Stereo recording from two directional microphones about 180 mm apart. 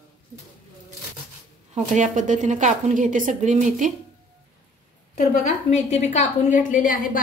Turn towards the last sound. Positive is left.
turn(degrees=45)  # may be behind; listen again after turning